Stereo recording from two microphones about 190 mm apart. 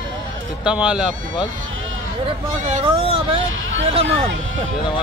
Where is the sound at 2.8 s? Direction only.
25° right (ahead or behind).